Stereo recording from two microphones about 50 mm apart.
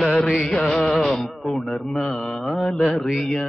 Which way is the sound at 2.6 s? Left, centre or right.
Centre.